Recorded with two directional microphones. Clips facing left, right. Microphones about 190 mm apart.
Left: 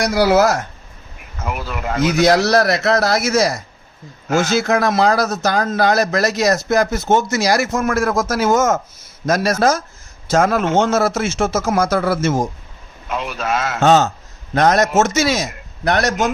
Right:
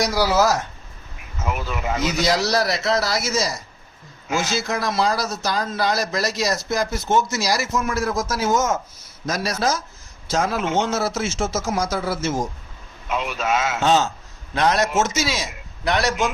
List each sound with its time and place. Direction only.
0.0 s a man's voice: 60° left (ahead or behind)
1.4 s a man's voice: 5° left (ahead or behind)
2.0 s a man's voice: 55° left (ahead or behind)
13.1 s a man's voice: centre (ahead or behind)
13.7 s a man's voice: 55° left (ahead or behind)